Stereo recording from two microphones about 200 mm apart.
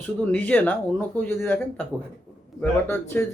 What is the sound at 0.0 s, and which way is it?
Speech, 5° left (ahead or behind).